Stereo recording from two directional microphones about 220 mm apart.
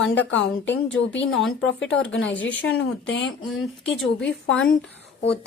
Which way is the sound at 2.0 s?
55° left (ahead or behind).